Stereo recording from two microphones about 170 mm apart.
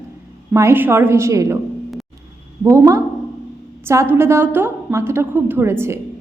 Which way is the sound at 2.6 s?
15° right (ahead or behind).